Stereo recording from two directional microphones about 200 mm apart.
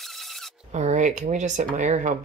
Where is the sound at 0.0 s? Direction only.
Centre (ahead or behind).